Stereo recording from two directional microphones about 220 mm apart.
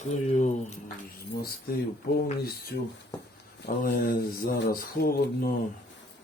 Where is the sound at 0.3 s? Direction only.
30° left (ahead or behind).